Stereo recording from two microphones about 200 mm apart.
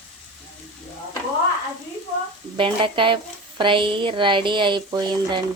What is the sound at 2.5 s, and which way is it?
A woman's voice, 25° right (ahead or behind).